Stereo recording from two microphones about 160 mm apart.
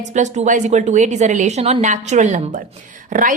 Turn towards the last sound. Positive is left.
turn(degrees=-55)  # may be behind; listen again after turning